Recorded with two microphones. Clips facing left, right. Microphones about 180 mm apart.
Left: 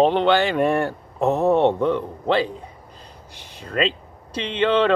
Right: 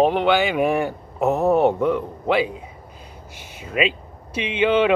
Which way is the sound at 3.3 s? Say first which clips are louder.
Even; 10° right (ahead or behind).